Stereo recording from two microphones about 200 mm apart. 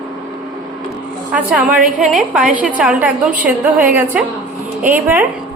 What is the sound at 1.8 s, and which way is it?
Speech, 40° right (ahead or behind).